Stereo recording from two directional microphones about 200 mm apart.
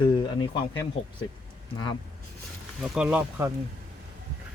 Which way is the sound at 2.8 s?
5° right (ahead or behind).